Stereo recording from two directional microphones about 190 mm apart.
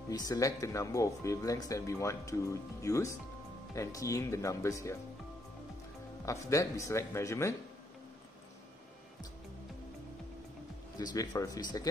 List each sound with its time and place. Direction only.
0.1 s speech: 20° left (ahead or behind)
6.2 s speech: 15° left (ahead or behind)
11.0 s speech: 20° left (ahead or behind)